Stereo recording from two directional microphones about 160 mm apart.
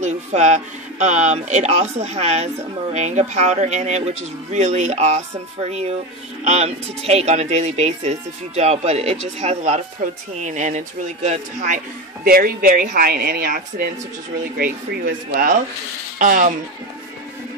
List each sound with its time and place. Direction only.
0.0 s speech: 45° right (ahead or behind)
12.3 s speech: 65° right (ahead or behind)